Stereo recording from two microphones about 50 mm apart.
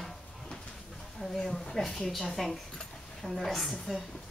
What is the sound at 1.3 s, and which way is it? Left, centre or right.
A woman's voice, centre.